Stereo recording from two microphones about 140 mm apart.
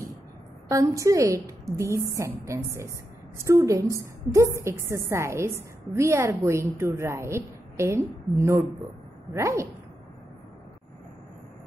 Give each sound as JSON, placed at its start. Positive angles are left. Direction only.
{"t": 0.7, "sound": "a woman's voice", "side_deg": -25}